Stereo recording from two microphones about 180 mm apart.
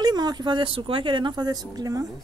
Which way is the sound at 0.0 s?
20° right (ahead or behind).